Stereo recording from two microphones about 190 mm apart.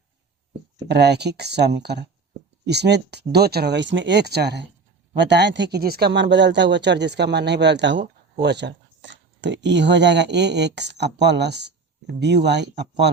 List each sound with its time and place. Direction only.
0.8 s speech: 60° right (ahead or behind)